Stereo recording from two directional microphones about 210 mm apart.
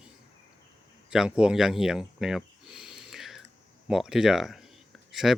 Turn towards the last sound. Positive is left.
turn(degrees=0)  # may be behind; listen again after turning